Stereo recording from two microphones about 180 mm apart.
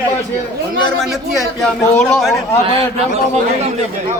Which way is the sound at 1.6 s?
10° left (ahead or behind).